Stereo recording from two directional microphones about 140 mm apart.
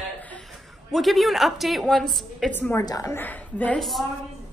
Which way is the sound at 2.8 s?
25° left (ahead or behind).